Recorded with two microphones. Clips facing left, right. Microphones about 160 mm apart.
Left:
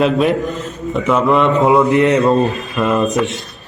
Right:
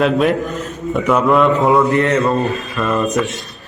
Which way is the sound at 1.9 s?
20° left (ahead or behind).